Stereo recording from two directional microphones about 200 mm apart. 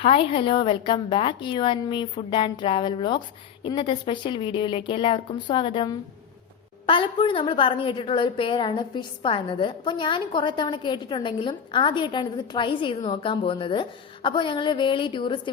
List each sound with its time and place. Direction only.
0.0 s a woman's voice: 25° left (ahead or behind)